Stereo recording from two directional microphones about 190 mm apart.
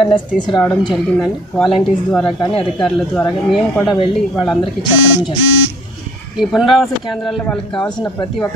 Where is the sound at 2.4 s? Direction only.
30° left (ahead or behind).